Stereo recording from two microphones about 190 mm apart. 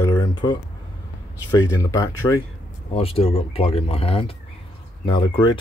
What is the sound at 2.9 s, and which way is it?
Speech, 30° left (ahead or behind).